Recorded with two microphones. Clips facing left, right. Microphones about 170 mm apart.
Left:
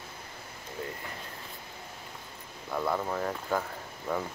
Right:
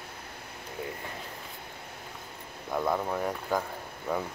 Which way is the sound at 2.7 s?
10° right (ahead or behind).